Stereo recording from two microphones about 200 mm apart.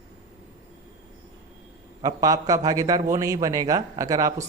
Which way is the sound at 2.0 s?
15° right (ahead or behind).